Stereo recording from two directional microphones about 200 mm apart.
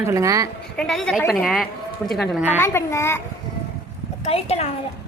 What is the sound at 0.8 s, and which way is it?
A woman's voice, 5° left (ahead or behind).